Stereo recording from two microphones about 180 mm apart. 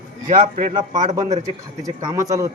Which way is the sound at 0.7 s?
25° right (ahead or behind).